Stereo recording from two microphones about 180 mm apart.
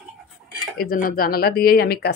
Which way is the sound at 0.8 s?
50° left (ahead or behind).